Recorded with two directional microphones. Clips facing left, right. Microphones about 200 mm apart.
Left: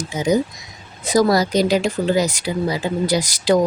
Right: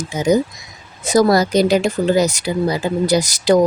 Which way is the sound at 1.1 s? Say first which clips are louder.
Right 2 dB; 50° right (ahead or behind).